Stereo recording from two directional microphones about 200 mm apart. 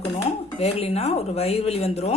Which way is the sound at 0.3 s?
30° left (ahead or behind).